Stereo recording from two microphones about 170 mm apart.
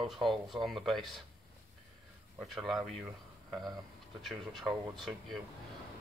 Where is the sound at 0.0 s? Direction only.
Centre (ahead or behind).